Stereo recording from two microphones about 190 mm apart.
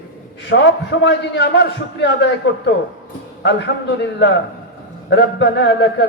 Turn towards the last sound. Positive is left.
turn(degrees=65)  # may be behind; listen again after turning